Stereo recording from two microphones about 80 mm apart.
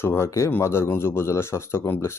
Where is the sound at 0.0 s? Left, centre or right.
Left.